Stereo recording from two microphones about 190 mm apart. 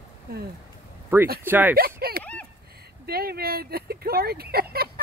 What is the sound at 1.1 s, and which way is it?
Speech, 10° right (ahead or behind).